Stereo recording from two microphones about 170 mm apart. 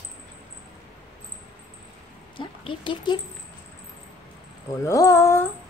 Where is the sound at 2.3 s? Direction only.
30° left (ahead or behind).